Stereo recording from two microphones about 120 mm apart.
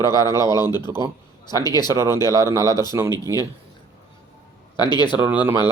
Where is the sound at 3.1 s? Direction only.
30° left (ahead or behind).